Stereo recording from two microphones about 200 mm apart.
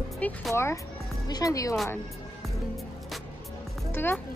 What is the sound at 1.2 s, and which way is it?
Speech, 20° left (ahead or behind).